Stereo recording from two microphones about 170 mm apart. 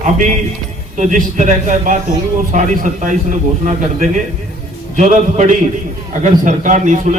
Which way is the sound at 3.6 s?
50° right (ahead or behind).